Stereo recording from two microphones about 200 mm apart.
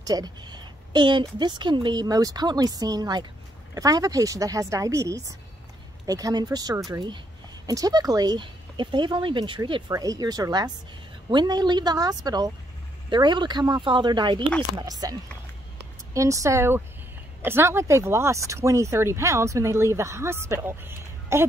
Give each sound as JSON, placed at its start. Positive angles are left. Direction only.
{"t": 0.0, "sound": "a woman's voice", "side_deg": -20}